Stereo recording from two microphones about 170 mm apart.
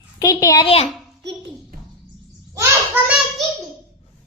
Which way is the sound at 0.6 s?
35° left (ahead or behind).